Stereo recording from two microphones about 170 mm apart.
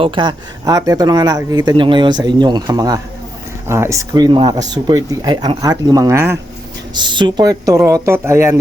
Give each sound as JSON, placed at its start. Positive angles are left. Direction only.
{"t": 0.0, "sound": "speech", "side_deg": -30}
{"t": 6.9, "sound": "speech", "side_deg": -25}